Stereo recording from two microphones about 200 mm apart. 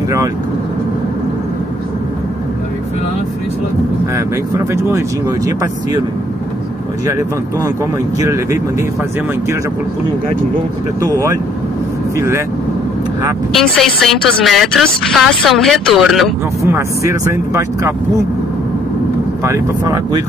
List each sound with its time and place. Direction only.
7.1 s speech: 15° right (ahead or behind)
13.5 s a woman's voice: centre (ahead or behind)
16.7 s speech: 15° right (ahead or behind)
19.4 s speech: 15° right (ahead or behind)